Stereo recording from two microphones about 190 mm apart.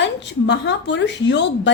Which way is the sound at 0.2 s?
65° left (ahead or behind).